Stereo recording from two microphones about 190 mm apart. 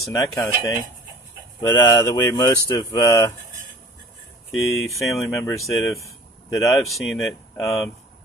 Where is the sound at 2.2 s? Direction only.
20° left (ahead or behind).